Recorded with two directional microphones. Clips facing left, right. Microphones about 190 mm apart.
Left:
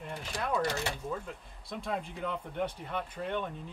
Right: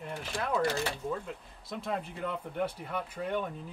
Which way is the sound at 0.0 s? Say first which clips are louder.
Right 1 dB; 5° right (ahead or behind).